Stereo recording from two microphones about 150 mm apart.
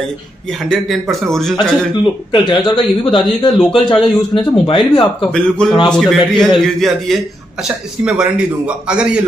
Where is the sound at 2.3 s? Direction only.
30° left (ahead or behind).